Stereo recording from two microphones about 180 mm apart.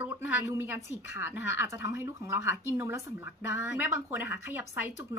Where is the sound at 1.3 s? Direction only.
90° left.